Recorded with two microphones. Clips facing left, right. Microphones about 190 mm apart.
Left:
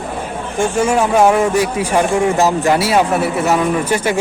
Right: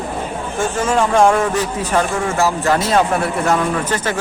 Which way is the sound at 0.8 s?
10° left (ahead or behind).